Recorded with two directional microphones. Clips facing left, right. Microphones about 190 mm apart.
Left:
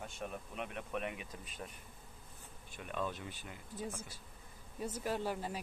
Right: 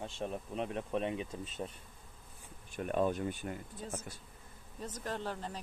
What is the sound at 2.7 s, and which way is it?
Speech, 45° right (ahead or behind).